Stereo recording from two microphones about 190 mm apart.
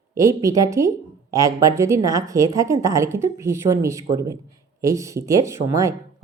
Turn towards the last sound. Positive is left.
turn(degrees=-15)  # may be behind; listen again after turning